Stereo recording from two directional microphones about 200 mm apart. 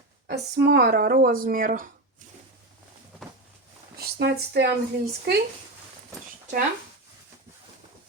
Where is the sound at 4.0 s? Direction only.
55° right (ahead or behind).